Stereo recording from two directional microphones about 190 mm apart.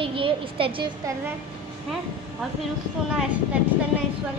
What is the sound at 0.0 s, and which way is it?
Speech, 30° right (ahead or behind).